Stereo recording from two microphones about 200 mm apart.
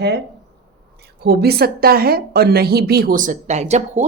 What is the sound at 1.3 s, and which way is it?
A woman's voice, 50° right (ahead or behind).